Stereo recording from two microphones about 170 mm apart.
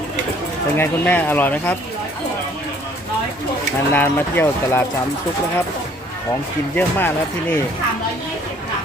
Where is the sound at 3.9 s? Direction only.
10° left (ahead or behind).